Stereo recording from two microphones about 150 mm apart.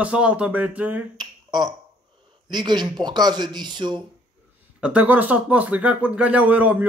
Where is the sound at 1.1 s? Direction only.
30° right (ahead or behind).